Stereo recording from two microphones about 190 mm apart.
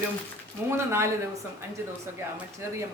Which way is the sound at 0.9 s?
15° right (ahead or behind).